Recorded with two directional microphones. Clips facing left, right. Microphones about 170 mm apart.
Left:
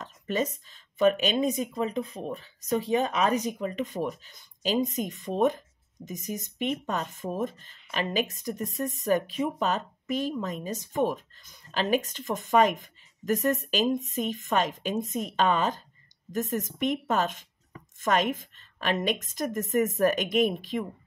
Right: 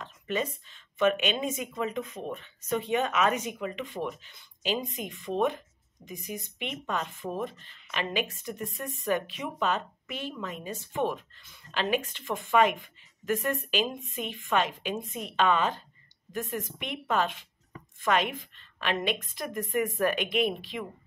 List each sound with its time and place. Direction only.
0.0 s a woman's voice: 40° left (ahead or behind)